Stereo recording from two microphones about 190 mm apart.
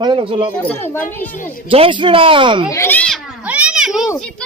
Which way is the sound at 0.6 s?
10° left (ahead or behind).